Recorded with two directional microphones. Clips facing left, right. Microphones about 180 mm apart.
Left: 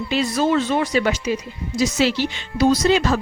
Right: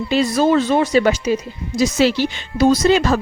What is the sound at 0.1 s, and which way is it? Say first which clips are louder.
Speech: right 4 dB; 40° right (ahead or behind).